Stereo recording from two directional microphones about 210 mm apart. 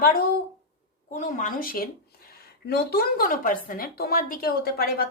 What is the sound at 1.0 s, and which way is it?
A woman's voice, 35° left (ahead or behind).